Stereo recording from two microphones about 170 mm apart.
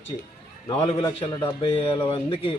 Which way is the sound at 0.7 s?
30° left (ahead or behind).